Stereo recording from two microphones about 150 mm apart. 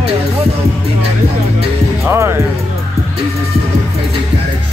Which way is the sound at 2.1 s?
15° right (ahead or behind).